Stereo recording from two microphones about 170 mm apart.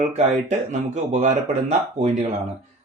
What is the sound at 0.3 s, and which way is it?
Speech, 40° right (ahead or behind).